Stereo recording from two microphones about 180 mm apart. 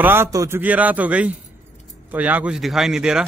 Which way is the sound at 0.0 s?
15° right (ahead or behind).